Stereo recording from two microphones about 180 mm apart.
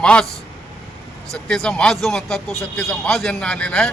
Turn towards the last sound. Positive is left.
turn(degrees=5)  # may be behind; listen again after turning